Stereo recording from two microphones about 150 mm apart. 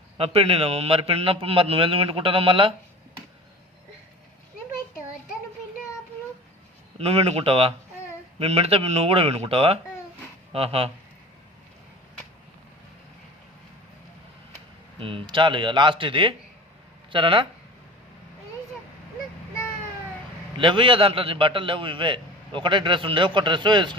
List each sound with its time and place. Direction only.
0.2 s a man's voice: 40° right (ahead or behind)
7.0 s a man's voice: 45° right (ahead or behind)
14.9 s a man's voice: 35° right (ahead or behind)
20.6 s a man's voice: 35° right (ahead or behind)